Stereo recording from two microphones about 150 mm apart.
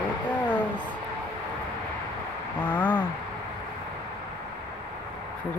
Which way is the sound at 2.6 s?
10° left (ahead or behind).